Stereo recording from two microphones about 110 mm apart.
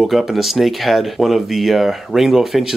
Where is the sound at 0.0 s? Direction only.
Centre (ahead or behind).